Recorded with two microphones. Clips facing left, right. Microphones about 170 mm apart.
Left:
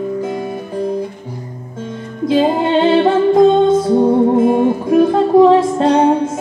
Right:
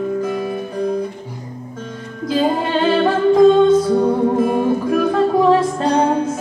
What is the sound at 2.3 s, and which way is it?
Music, 25° left (ahead or behind).